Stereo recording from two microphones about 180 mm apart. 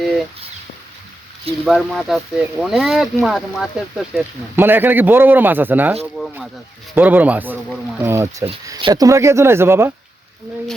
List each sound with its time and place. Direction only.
1.6 s speech: centre (ahead or behind)
4.5 s speech: 10° right (ahead or behind)